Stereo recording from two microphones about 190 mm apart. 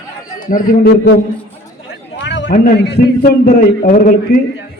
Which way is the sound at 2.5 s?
60° left (ahead or behind).